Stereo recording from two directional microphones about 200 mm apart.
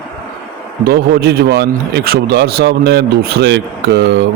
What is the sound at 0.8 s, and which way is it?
Speech, 55° right (ahead or behind).